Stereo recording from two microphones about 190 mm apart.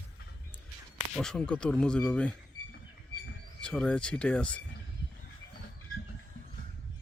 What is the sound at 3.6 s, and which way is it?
Speech, 5° left (ahead or behind).